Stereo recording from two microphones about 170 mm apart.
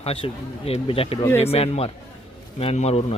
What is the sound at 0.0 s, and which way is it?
A man's voice, 35° left (ahead or behind).